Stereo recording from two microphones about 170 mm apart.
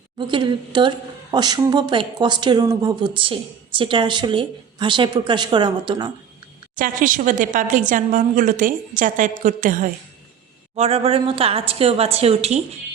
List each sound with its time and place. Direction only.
0.2 s a woman's voice: 30° right (ahead or behind)
6.7 s a woman's voice: 55° right (ahead or behind)
10.8 s a woman's voice: 35° right (ahead or behind)